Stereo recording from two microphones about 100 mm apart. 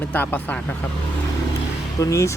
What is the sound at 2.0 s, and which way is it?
Speech, 30° left (ahead or behind).